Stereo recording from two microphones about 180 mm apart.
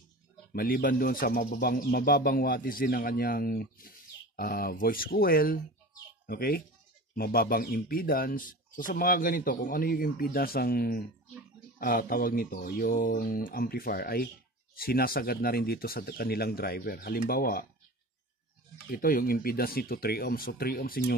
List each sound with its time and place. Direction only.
0.5 s speech: 55° left (ahead or behind)
18.9 s speech: 55° left (ahead or behind)